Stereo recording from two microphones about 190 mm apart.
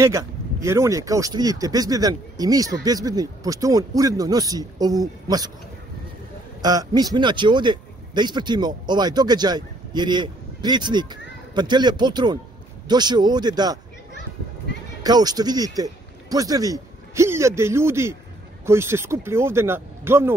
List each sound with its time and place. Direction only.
0.0 s speech: 15° right (ahead or behind)
6.6 s speech: 20° right (ahead or behind)
15.0 s speech: 20° right (ahead or behind)